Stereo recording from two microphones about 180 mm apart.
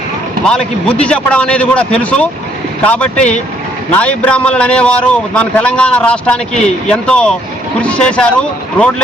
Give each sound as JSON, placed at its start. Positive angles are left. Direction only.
{"t": 0.4, "sound": "a man's voice", "side_deg": 5}